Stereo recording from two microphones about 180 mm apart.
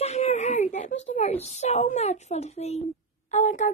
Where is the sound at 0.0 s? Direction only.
40° left (ahead or behind).